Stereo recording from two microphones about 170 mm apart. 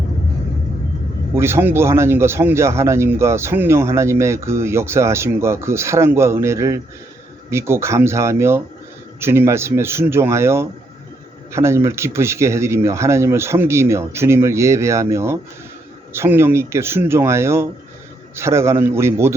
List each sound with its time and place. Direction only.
1.4 s speech: 15° right (ahead or behind)